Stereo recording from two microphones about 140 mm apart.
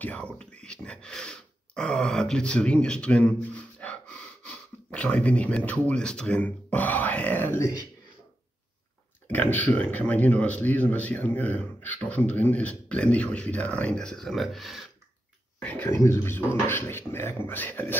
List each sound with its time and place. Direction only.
0.0 s speech: 10° left (ahead or behind)
9.3 s speech: 10° left (ahead or behind)
15.6 s speech: 10° left (ahead or behind)